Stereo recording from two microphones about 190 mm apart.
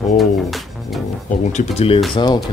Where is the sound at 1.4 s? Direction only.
35° left (ahead or behind).